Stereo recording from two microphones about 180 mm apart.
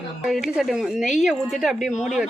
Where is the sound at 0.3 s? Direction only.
Centre (ahead or behind).